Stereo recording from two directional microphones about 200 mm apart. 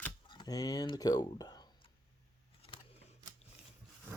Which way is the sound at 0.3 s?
20° left (ahead or behind).